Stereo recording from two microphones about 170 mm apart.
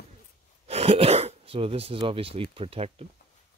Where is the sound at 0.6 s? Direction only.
35° right (ahead or behind).